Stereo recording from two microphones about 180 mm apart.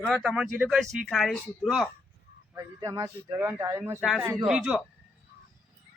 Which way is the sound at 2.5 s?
15° right (ahead or behind).